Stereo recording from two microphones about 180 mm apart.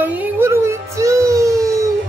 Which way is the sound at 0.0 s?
10° right (ahead or behind).